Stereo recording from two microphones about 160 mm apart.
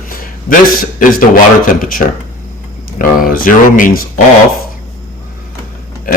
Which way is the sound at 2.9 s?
60° left (ahead or behind).